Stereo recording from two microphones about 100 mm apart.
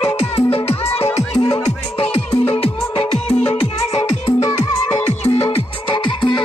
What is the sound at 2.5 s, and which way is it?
Music, 80° left.